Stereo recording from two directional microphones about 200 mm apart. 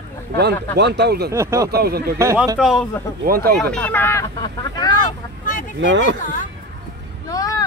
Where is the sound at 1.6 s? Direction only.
50° right (ahead or behind).